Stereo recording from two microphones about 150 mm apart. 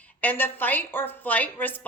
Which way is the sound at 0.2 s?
15° left (ahead or behind).